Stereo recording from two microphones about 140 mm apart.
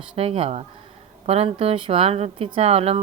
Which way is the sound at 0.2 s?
45° right (ahead or behind).